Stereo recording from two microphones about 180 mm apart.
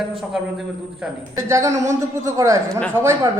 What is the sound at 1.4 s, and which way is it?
A woman's voice, 15° right (ahead or behind).